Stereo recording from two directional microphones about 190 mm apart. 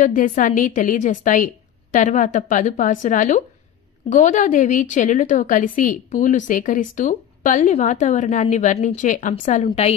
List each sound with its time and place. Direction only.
0.0 s a woman's voice: 45° left (ahead or behind)